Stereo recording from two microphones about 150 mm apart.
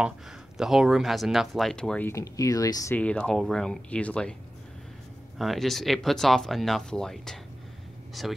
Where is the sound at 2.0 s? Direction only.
20° left (ahead or behind).